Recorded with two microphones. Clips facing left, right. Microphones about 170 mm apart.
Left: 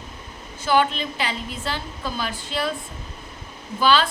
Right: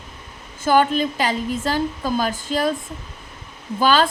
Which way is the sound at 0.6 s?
45° right (ahead or behind).